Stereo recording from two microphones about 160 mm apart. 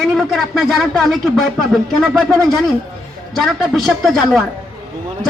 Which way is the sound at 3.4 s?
Centre (ahead or behind).